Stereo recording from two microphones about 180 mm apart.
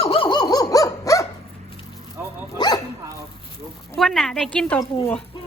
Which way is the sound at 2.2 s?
10° right (ahead or behind).